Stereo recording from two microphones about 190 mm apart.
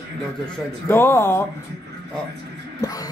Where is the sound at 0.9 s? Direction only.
10° left (ahead or behind).